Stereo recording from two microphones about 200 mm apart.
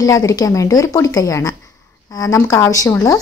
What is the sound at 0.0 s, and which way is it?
Speech, 15° left (ahead or behind).